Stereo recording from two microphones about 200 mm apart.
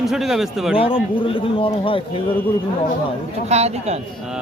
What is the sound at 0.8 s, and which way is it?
A man's voice, 25° left (ahead or behind).